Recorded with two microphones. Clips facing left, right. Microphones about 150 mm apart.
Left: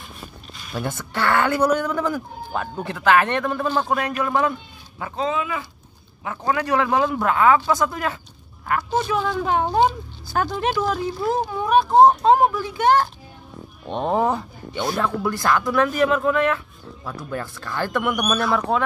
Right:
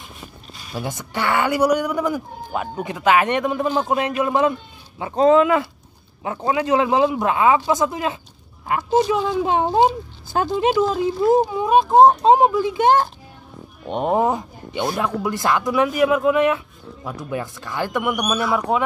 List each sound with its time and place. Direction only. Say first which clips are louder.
0.7 s speech: even; 15° right (ahead or behind)
5.3 s speech: right 11 dB; 65° right (ahead or behind)
6.2 s speech: right 2 dB; 30° right (ahead or behind); by 18.8 s 10° right (ahead or behind)